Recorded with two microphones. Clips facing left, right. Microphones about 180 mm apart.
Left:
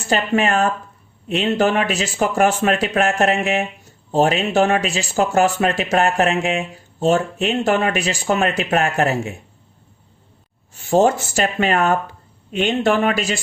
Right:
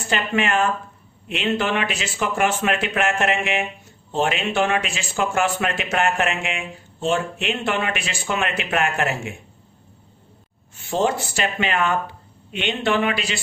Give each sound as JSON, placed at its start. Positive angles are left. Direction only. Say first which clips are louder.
{"t": 0.1, "sound": "speech", "louder": "left 4 dB", "side_deg": 40}
{"t": 10.8, "sound": "speech", "louder": "left 6 dB", "side_deg": 45}